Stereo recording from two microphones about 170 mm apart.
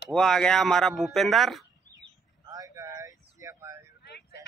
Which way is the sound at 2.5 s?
20° right (ahead or behind).